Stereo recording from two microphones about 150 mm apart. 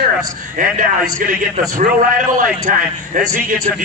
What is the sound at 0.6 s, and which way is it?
A man's voice, 65° right (ahead or behind).